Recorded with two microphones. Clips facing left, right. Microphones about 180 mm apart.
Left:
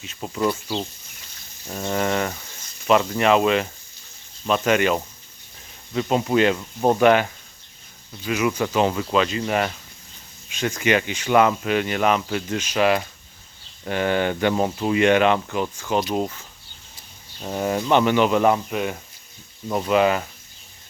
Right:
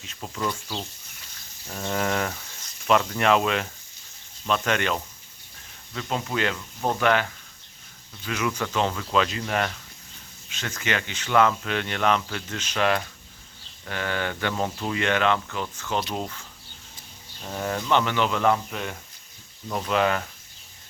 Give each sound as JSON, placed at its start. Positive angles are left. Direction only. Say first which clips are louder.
{"t": 0.0, "sound": "speech", "louder": "left 5 dB", "side_deg": 5}
{"t": 0.4, "sound": "speech", "louder": "left 7 dB", "side_deg": 20}
{"t": 5.9, "sound": "speech", "louder": "left 9 dB", "side_deg": 20}
{"t": 7.0, "sound": "speech", "louder": "left 5 dB", "side_deg": 15}